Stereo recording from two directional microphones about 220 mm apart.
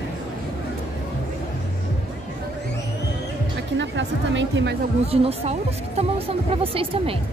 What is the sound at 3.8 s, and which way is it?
Music, 55° right (ahead or behind).